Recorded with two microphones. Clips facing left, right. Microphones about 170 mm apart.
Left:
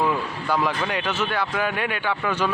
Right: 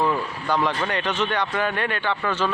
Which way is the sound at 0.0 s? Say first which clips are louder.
Even; 10° left (ahead or behind).